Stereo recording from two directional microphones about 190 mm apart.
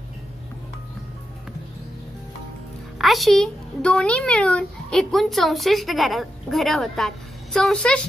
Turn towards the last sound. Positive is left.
turn(degrees=5)  # may be behind; listen again after turning